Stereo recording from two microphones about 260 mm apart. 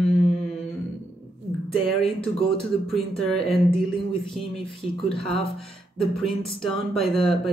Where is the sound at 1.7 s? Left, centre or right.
Left.